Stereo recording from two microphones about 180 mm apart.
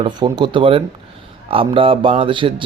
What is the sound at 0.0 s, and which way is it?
A man's voice, 25° right (ahead or behind).